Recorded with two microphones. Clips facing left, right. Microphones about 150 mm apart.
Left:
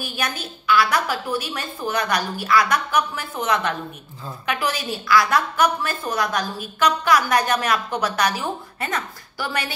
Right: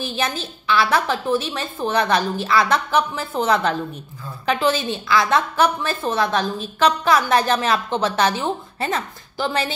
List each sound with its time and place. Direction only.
0.0 s a woman's voice: 25° right (ahead or behind)